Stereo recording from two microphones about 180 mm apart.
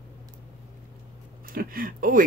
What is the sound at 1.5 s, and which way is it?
Speech, 55° right (ahead or behind).